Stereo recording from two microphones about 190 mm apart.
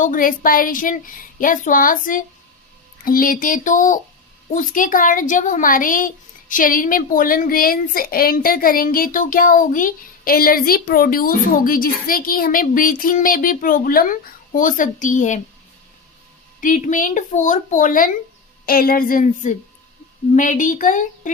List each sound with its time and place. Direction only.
0.0 s speech: 45° left (ahead or behind)
16.6 s speech: 45° left (ahead or behind)